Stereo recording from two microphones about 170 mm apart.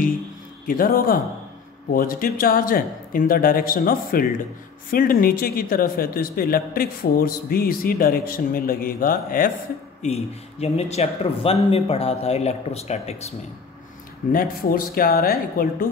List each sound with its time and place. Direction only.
0.7 s speech: 55° left (ahead or behind)
10.0 s speech: 40° left (ahead or behind)
14.3 s speech: 60° left (ahead or behind)